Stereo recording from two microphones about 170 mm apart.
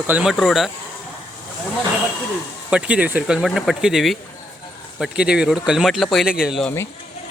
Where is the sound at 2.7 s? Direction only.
10° right (ahead or behind).